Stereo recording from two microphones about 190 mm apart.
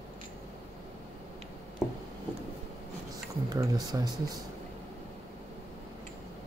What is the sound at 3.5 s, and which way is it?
Speech, 20° right (ahead or behind).